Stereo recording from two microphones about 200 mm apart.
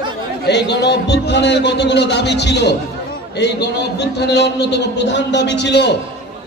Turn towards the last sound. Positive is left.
turn(degrees=60)  # may be behind; listen again after turning